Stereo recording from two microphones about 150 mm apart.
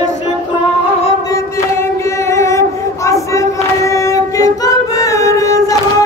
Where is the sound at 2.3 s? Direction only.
20° left (ahead or behind).